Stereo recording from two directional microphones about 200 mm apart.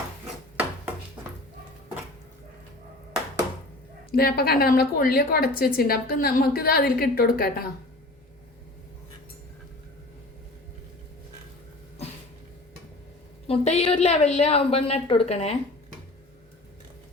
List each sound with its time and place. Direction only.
4.1 s a woman's voice: 50° left (ahead or behind)
13.5 s a woman's voice: 30° left (ahead or behind)